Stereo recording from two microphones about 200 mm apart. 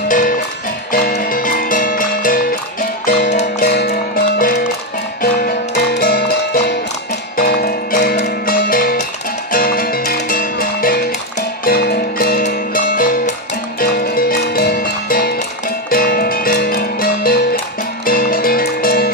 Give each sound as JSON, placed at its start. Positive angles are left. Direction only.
{"t": 0.1, "sound": "music", "side_deg": 45}